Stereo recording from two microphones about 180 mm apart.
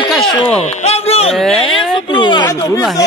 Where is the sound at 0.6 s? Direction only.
35° left (ahead or behind).